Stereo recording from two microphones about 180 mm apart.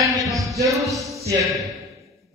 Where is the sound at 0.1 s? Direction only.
Centre (ahead or behind).